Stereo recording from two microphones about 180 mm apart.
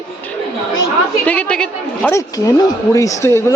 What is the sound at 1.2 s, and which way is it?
Speech, 5° left (ahead or behind).